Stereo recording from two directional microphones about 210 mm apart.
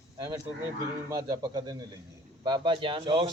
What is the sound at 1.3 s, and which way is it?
A man's voice, 20° right (ahead or behind).